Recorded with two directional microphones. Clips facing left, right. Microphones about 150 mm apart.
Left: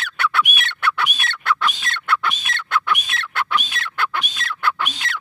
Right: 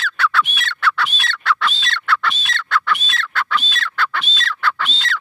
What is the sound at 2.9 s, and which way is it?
Duck, 15° left (ahead or behind).